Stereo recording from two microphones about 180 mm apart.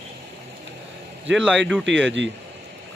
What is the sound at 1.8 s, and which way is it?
Speech, 90° right.